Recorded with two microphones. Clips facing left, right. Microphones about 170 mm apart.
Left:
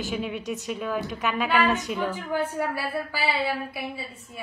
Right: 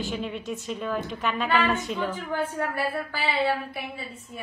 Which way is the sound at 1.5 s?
15° left (ahead or behind).